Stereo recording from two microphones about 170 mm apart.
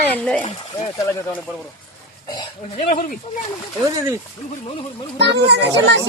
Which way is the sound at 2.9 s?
45° left (ahead or behind).